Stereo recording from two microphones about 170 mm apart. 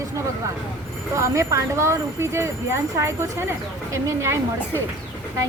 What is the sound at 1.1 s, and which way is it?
Speech, 20° right (ahead or behind).